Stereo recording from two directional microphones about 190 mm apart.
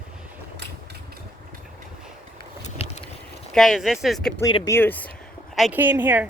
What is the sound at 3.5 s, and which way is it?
Speech, centre (ahead or behind).